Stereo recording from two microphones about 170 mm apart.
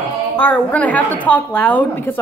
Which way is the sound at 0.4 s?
10° left (ahead or behind).